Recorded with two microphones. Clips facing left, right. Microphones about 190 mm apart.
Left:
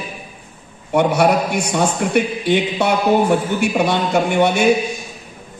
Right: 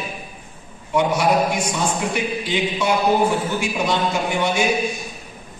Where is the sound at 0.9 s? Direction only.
60° left (ahead or behind).